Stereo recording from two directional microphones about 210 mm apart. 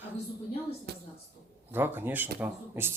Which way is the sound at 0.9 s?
50° right (ahead or behind).